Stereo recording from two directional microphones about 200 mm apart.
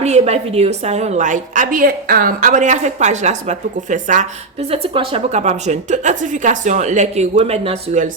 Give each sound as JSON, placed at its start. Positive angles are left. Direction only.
{"t": 0.0, "sound": "a woman's voice", "side_deg": -35}